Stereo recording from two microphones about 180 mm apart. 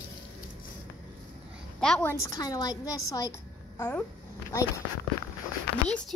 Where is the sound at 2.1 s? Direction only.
20° left (ahead or behind).